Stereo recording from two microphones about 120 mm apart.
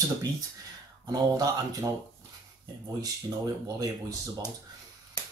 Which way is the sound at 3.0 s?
30° right (ahead or behind).